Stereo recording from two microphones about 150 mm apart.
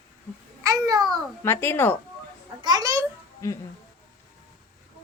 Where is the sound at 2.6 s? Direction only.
25° right (ahead or behind).